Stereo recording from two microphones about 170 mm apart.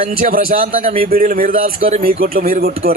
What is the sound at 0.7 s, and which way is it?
Speech, 35° right (ahead or behind).